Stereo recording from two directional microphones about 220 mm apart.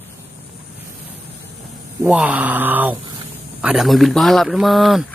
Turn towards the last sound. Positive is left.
turn(degrees=0)  # may be behind; listen again after turning